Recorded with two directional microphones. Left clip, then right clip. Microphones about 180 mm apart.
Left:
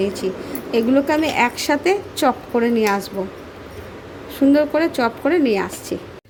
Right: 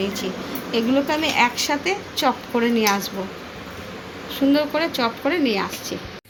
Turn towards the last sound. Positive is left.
turn(degrees=40)  # may be behind; listen again after turning